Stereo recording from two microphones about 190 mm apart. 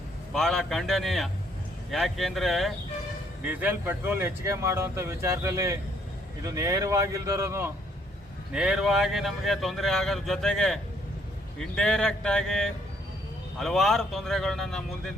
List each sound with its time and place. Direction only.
0.3 s speech: centre (ahead or behind); by 7.7 s 15° right (ahead or behind)
8.5 s speech: 5° right (ahead or behind)